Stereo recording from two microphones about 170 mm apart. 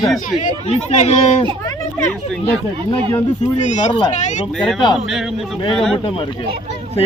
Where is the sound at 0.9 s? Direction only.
40° left (ahead or behind).